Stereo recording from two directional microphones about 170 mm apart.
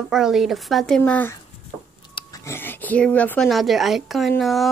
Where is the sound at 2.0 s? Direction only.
25° left (ahead or behind).